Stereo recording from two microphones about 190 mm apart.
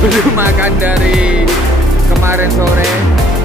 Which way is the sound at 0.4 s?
10° right (ahead or behind).